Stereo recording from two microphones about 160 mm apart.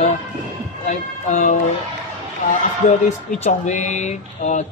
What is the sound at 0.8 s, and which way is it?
Speech, 50° left (ahead or behind).